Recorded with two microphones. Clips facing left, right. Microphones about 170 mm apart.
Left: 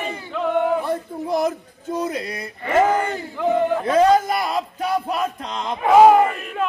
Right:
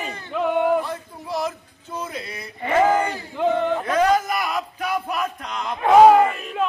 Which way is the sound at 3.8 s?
30° left (ahead or behind).